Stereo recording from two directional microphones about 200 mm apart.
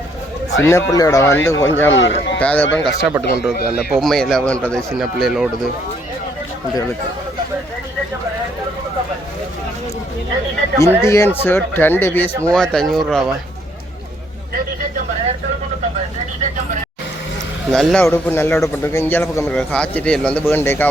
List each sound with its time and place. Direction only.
0.6 s speech: 15° left (ahead or behind)
1.9 s a man's voice: 70° left (ahead or behind)
2.4 s speech: 5° left (ahead or behind)
10.8 s speech: 15° left (ahead or behind)
17.7 s speech: centre (ahead or behind)
18.0 s speech: 10° left (ahead or behind)